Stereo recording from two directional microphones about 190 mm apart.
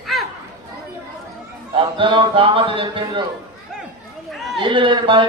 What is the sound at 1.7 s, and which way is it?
Speech, 25° right (ahead or behind).